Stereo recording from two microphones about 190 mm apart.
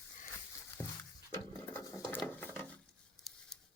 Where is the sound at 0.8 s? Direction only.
10° left (ahead or behind).